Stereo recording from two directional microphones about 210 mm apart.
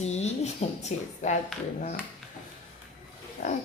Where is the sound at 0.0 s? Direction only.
30° left (ahead or behind).